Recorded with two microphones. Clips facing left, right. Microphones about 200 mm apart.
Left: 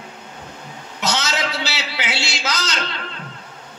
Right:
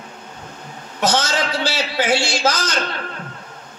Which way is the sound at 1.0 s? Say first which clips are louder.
Right 4 dB; 50° right (ahead or behind).